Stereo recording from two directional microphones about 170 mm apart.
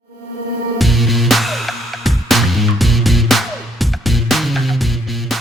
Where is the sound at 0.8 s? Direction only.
Centre (ahead or behind).